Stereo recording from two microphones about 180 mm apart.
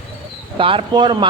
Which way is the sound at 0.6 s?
30° right (ahead or behind).